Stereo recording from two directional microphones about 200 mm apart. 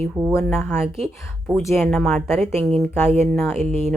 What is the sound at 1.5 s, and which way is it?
A woman's voice, centre (ahead or behind).